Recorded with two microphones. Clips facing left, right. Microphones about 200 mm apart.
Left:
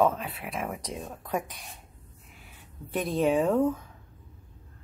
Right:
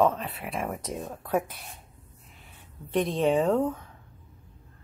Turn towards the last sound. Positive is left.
turn(degrees=0)  # may be behind; listen again after turning